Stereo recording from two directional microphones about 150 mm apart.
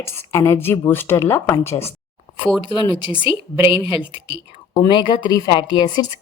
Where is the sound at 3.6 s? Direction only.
35° left (ahead or behind).